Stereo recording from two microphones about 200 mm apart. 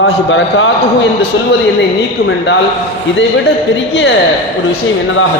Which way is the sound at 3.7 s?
65° left (ahead or behind).